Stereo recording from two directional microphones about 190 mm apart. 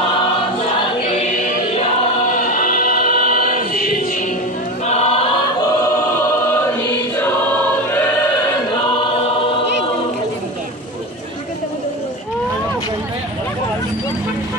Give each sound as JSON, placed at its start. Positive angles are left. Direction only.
{"t": 2.3, "sound": "choir", "side_deg": 45}
{"t": 4.8, "sound": "choir", "side_deg": 35}
{"t": 6.5, "sound": "choir", "side_deg": 10}
{"t": 8.8, "sound": "choir", "side_deg": 25}